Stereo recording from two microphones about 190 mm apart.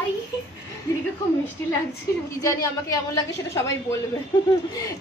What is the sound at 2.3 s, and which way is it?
A woman's voice, 20° left (ahead or behind).